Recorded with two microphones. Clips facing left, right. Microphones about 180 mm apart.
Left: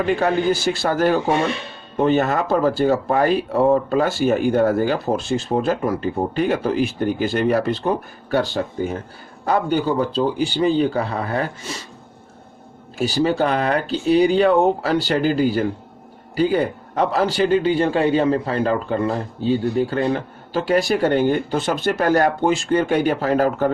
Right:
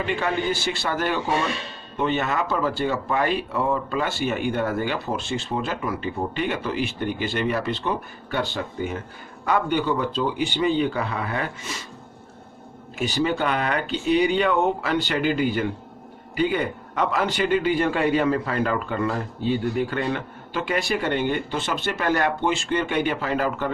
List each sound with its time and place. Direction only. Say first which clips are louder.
0.0 s a man's voice: left 6 dB; 40° left (ahead or behind)
13.0 s a man's voice: left 5 dB; 35° left (ahead or behind)